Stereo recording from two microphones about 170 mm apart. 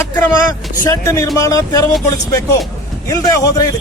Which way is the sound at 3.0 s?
20° left (ahead or behind).